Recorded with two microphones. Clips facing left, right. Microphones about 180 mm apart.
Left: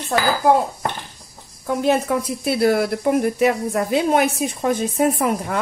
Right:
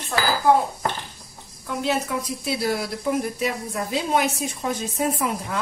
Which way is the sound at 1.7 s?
50° left (ahead or behind).